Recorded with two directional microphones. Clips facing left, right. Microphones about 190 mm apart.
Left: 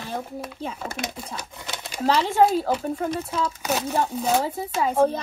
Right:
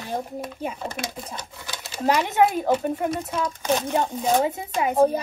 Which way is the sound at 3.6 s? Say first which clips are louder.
Right 3 dB; 10° left (ahead or behind).